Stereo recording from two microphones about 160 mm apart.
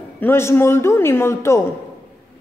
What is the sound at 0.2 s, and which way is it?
A man's voice, 15° left (ahead or behind).